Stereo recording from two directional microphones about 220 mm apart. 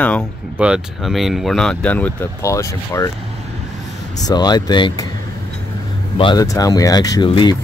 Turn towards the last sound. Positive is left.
turn(degrees=20)  # may be behind; listen again after turning